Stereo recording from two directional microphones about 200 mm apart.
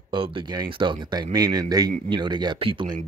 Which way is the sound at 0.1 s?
25° right (ahead or behind).